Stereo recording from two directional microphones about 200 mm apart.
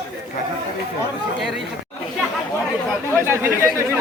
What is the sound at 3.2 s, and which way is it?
Speech, 15° right (ahead or behind).